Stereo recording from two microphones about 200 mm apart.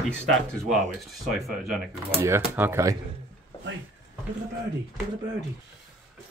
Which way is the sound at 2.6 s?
15° right (ahead or behind).